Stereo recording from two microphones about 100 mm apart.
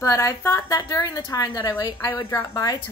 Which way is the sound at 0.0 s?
30° left (ahead or behind).